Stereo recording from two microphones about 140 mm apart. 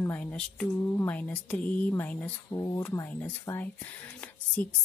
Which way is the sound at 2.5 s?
25° left (ahead or behind).